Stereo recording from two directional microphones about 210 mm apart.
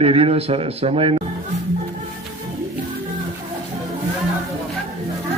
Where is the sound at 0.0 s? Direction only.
25° right (ahead or behind).